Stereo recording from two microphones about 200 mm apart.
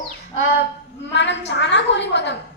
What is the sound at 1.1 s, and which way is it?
A woman's voice, 60° left (ahead or behind).